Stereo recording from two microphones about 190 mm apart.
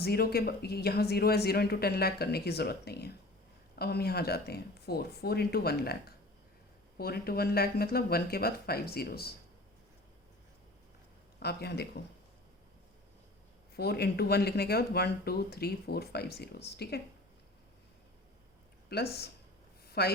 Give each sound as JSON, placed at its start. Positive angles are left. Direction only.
{"t": 0.0, "sound": "speech", "side_deg": 55}
{"t": 11.3, "sound": "speech", "side_deg": 60}
{"t": 13.7, "sound": "speech", "side_deg": 60}
{"t": 18.9, "sound": "a woman's voice", "side_deg": 55}